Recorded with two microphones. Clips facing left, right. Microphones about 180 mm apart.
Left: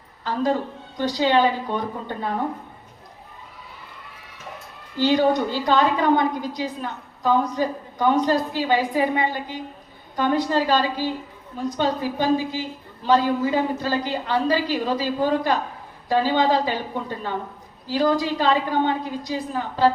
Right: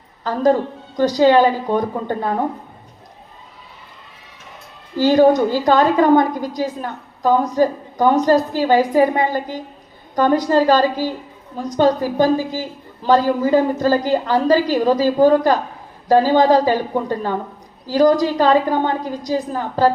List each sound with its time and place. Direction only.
0.3 s a woman's voice: 45° right (ahead or behind)
4.9 s a woman's voice: 45° right (ahead or behind)